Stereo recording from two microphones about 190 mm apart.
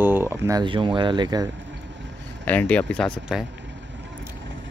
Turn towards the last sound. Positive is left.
turn(degrees=0)  # may be behind; listen again after turning